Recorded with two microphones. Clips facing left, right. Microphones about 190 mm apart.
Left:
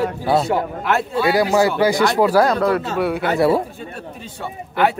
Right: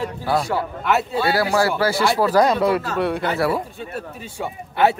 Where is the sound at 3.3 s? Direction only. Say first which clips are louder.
Left 9 dB; 25° left (ahead or behind).